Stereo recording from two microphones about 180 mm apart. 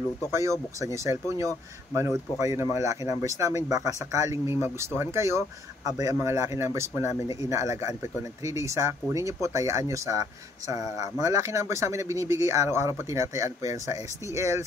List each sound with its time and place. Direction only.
0.3 s speech: 15° right (ahead or behind)